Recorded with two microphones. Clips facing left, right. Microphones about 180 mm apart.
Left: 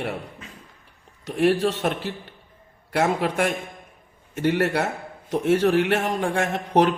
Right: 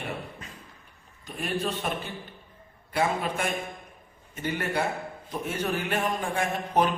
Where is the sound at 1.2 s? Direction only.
80° left.